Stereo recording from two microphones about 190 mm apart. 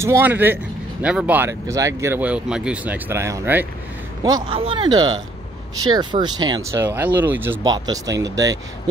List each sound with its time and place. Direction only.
0.0 s speech: 10° right (ahead or behind)
4.5 s speech: 30° right (ahead or behind)